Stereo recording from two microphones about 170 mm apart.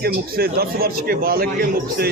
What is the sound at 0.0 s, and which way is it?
A man's voice, 65° right (ahead or behind).